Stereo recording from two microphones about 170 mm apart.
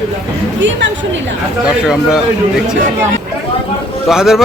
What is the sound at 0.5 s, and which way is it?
Speech, 90° right.